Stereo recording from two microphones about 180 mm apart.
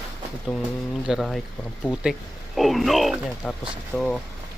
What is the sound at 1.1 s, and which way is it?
Speech, centre (ahead or behind).